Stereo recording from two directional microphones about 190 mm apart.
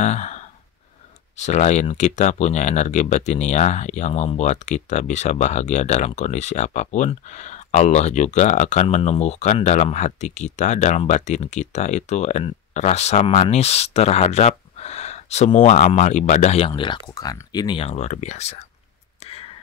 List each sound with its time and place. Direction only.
0.0 s sigh: 40° left (ahead or behind)
1.4 s speech: 40° left (ahead or behind)
19.2 s a sound: 30° left (ahead or behind)